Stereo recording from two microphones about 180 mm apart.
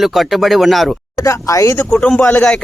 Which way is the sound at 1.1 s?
15° left (ahead or behind).